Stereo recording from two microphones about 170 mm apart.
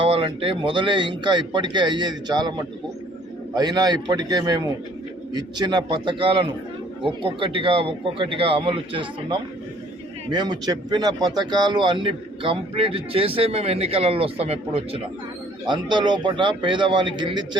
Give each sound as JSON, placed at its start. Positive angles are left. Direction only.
{"t": 0.0, "sound": "a man's voice", "side_deg": -30}